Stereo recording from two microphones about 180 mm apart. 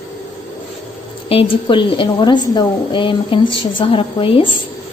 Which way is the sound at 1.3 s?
30° left (ahead or behind).